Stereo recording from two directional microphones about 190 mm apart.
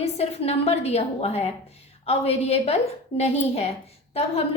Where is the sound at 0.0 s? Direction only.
35° left (ahead or behind).